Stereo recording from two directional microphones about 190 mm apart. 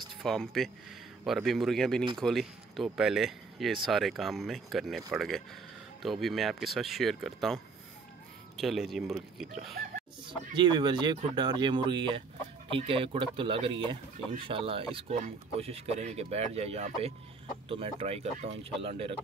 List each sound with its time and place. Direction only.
0.2 s speech: centre (ahead or behind)
10.2 s speech: 25° right (ahead or behind)